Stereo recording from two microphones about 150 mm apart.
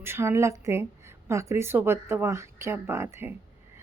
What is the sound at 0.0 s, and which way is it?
A woman's voice, 15° right (ahead or behind).